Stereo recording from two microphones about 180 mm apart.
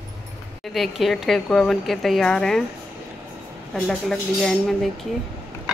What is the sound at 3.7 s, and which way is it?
Speech, 5° left (ahead or behind).